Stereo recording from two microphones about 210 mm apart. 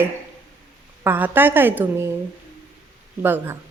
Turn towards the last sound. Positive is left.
turn(degrees=-10)  # may be behind; listen again after turning